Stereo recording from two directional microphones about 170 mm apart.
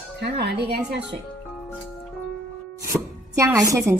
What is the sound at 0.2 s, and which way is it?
Speech, 75° right (ahead or behind).